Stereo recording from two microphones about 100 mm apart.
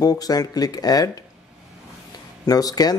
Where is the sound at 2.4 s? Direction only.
40° left (ahead or behind).